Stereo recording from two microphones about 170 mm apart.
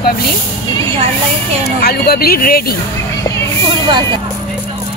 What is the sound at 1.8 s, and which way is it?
Speech, 65° left (ahead or behind).